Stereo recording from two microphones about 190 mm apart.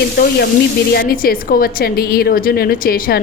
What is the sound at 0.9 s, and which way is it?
A woman's voice, 50° left (ahead or behind).